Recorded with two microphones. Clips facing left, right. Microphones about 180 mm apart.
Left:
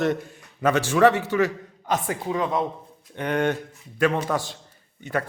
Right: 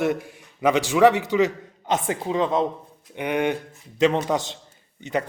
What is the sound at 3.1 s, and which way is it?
A man's voice, 15° right (ahead or behind).